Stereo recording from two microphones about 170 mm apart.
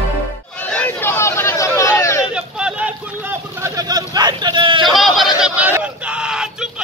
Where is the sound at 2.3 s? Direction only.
5° right (ahead or behind); by 4.8 s 30° right (ahead or behind).